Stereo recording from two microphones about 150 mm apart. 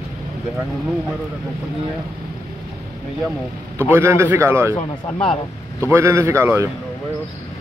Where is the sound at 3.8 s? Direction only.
15° right (ahead or behind).